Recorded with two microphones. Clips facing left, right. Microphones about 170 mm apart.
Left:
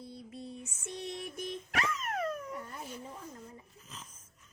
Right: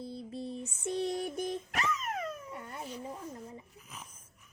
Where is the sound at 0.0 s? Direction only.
30° right (ahead or behind).